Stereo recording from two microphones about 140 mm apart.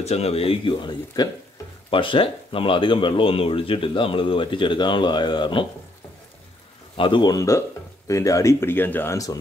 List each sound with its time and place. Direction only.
0.0 s speech: 45° left (ahead or behind)
7.0 s speech: 35° left (ahead or behind)